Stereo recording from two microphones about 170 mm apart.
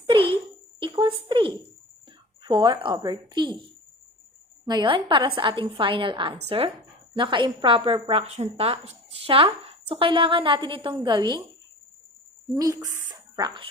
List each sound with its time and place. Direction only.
0.0 s a sound: 30° right (ahead or behind)
2.4 s a woman's voice: 30° right (ahead or behind)
4.7 s a woman's voice: 30° right (ahead or behind)
12.5 s a woman's voice: 20° right (ahead or behind)